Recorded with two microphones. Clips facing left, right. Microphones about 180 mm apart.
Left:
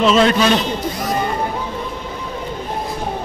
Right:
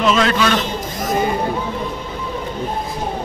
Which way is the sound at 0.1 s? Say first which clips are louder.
Left 3 dB; 25° left (ahead or behind).